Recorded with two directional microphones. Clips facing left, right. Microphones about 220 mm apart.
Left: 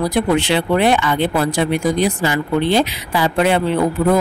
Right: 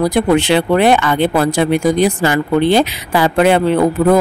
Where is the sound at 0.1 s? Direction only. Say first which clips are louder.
Right 4 dB; 45° right (ahead or behind).